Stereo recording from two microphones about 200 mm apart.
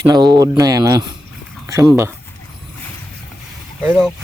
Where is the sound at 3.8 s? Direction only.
Centre (ahead or behind).